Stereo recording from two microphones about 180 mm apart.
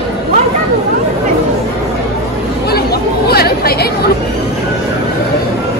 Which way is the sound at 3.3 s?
60° left (ahead or behind).